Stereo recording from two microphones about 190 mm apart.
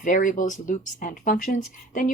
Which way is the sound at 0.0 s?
45° left (ahead or behind).